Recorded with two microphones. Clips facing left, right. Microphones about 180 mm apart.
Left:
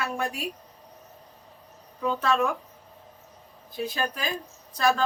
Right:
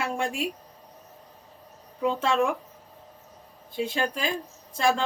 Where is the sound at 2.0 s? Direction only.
25° right (ahead or behind).